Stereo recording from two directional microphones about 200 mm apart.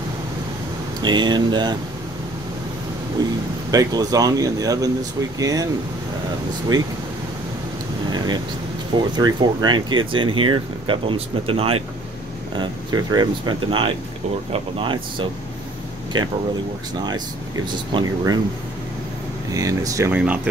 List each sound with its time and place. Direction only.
1.0 s speech: 20° right (ahead or behind)
3.2 s speech: 20° right (ahead or behind)
8.9 s speech: 20° right (ahead or behind)
17.9 s speech: 20° right (ahead or behind)
19.5 s speech: 15° right (ahead or behind)